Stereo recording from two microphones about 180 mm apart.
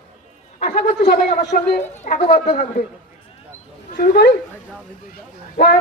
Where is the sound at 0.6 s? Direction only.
35° left (ahead or behind).